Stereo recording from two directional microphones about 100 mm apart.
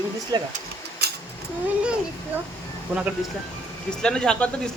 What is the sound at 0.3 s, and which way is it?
Speech, 45° right (ahead or behind).